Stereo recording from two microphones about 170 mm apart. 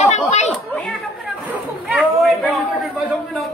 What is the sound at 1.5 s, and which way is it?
Speech, 5° right (ahead or behind).